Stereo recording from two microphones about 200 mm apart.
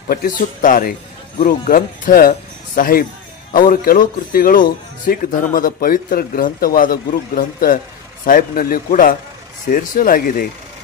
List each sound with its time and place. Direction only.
0.1 s a man's voice: 45° left (ahead or behind)